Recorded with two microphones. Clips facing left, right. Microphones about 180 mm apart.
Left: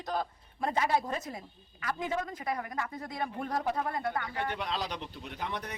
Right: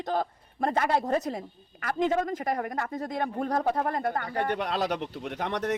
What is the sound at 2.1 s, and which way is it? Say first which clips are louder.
Speech: right 7 dB; 50° right (ahead or behind).